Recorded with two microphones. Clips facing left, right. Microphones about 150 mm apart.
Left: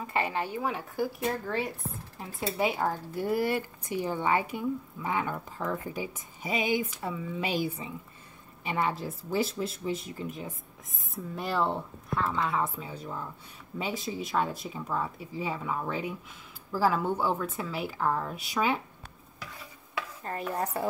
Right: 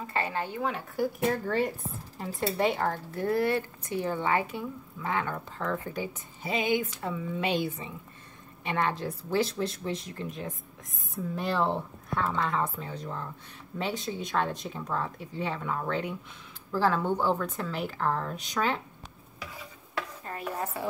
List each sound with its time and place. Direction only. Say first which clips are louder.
0.0 s speech: left 1 dB; 15° left (ahead or behind)
20.2 s dishes: left 5 dB; 40° left (ahead or behind)